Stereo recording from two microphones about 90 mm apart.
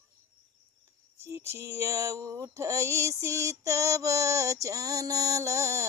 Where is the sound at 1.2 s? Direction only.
30° right (ahead or behind).